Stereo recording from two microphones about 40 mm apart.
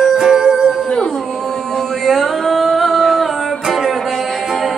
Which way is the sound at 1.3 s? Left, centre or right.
Centre.